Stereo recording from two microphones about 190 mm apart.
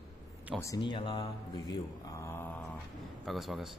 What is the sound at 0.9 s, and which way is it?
Mantra, 25° left (ahead or behind).